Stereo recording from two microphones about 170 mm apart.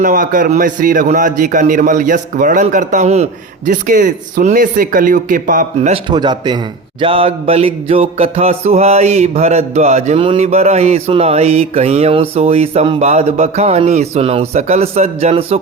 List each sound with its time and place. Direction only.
0.0 s a man's voice: 55° right (ahead or behind)
5.9 s a man's voice: 25° right (ahead or behind)
7.0 s music: 35° right (ahead or behind)